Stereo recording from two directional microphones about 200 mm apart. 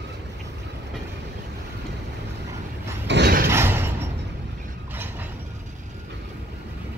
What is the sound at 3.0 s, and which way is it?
Mechanisms, 60° right (ahead or behind).